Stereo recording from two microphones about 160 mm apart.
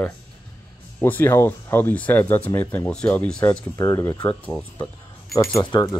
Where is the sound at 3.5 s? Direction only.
20° left (ahead or behind).